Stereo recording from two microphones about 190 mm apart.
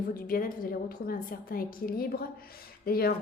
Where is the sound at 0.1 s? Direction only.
50° left (ahead or behind).